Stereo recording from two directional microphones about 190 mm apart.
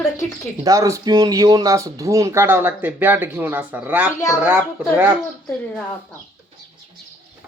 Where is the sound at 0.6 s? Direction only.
15° right (ahead or behind).